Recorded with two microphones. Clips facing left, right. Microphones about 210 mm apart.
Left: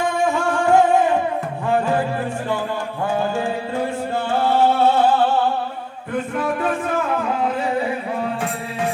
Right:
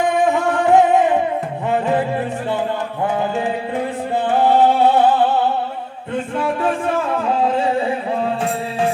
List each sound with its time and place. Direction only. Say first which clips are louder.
0.0 s music: right 3 dB; 20° right (ahead or behind)
4.3 s music: right 3 dB; 15° right (ahead or behind)
6.1 s music: right 1 dB; 30° right (ahead or behind)